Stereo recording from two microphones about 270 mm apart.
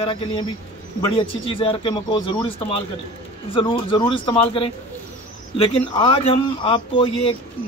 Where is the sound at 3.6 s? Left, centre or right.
Centre.